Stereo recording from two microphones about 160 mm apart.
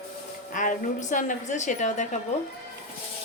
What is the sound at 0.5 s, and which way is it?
A woman's voice, 55° left (ahead or behind).